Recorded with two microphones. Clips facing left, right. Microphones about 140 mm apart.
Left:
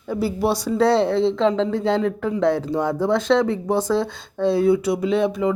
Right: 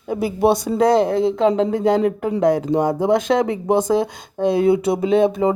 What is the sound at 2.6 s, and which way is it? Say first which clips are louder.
Speech: right 3 dB; 15° right (ahead or behind).